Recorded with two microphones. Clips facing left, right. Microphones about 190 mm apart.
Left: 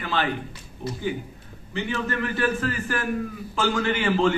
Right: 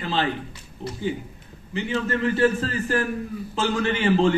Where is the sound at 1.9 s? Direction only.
25° right (ahead or behind).